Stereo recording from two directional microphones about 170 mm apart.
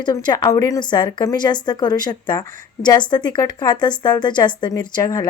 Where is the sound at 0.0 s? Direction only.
25° left (ahead or behind).